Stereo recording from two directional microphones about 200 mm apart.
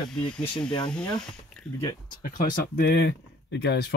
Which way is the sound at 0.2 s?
5° left (ahead or behind).